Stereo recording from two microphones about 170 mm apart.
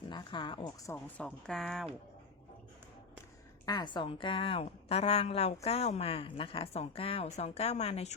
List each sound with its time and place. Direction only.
0.1 s a woman's voice: 30° left (ahead or behind)
1.2 s a woman's voice: 5° left (ahead or behind)
3.7 s a woman's voice: 25° left (ahead or behind)